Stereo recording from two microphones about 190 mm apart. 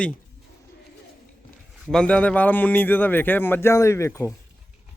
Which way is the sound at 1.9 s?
5° left (ahead or behind).